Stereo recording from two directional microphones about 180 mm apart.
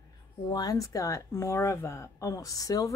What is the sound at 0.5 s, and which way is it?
Speech, 20° left (ahead or behind).